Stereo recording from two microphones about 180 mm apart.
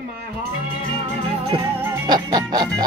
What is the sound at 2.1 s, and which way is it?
Music, 20° right (ahead or behind).